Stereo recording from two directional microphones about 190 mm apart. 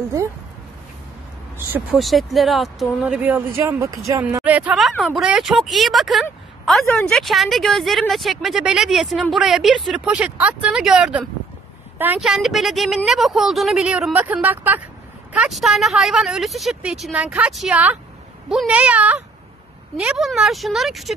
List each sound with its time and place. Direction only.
1.7 s a woman's voice: 5° right (ahead or behind)